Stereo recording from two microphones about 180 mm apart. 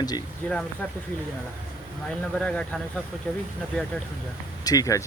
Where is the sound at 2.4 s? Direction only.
5° left (ahead or behind).